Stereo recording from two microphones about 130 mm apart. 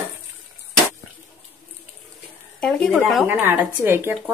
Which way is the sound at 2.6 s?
5° left (ahead or behind).